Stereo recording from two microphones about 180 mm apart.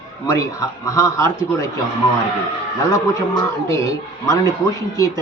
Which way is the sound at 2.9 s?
15° left (ahead or behind).